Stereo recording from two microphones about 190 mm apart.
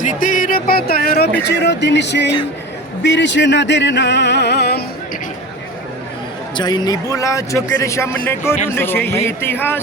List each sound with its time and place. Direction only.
0.0 s speech: 45° left (ahead or behind)
1.5 s music: 60° left (ahead or behind)
6.6 s speech: 20° left (ahead or behind)